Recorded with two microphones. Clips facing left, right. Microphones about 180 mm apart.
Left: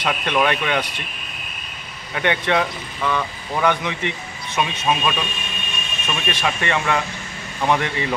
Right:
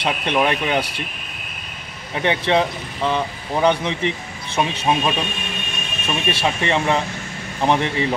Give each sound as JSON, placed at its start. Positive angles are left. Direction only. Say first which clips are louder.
{"t": 0.0, "sound": "speech", "louder": "right 1 dB", "side_deg": -30}
{"t": 2.1, "sound": "speech", "louder": "right 2 dB", "side_deg": -30}